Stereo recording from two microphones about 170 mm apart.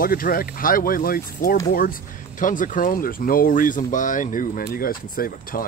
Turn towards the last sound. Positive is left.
turn(degrees=55)  # may be behind; listen again after turning